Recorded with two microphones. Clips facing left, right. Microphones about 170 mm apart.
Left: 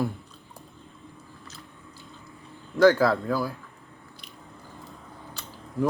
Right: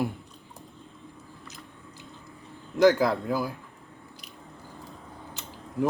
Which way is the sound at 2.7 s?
15° right (ahead or behind).